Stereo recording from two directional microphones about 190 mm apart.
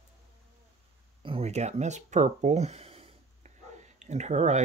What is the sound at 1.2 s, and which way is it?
Speech, 30° right (ahead or behind).